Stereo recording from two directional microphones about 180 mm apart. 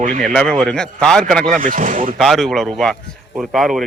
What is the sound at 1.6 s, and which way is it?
Speech, 45° right (ahead or behind).